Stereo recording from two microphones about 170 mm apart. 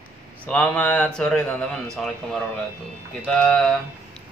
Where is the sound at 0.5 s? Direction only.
10° left (ahead or behind).